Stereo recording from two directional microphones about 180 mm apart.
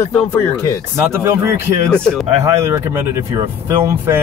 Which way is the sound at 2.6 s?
15° right (ahead or behind).